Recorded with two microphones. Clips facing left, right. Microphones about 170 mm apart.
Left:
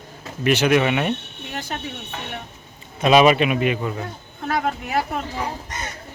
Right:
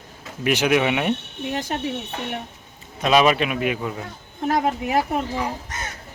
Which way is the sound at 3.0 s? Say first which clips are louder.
Left 3 dB; 5° left (ahead or behind).